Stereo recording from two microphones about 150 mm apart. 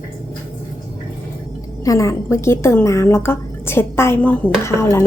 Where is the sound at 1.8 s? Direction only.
20° left (ahead or behind).